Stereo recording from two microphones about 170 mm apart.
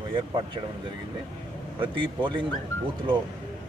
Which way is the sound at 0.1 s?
25° right (ahead or behind).